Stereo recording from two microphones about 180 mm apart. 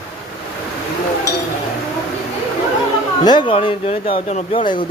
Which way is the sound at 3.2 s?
25° left (ahead or behind).